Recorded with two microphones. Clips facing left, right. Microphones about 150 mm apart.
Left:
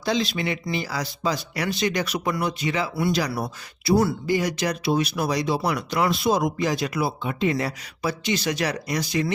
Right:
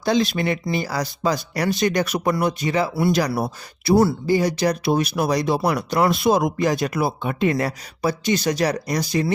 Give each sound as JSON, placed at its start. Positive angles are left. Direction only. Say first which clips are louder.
{"t": 0.0, "sound": "speech", "louder": "right 4 dB", "side_deg": -50}
{"t": 4.9, "sound": "speech", "louder": "even", "side_deg": -45}